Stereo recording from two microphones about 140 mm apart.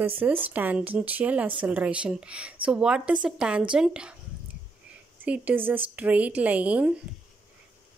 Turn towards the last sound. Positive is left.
turn(degrees=-10)  # may be behind; listen again after turning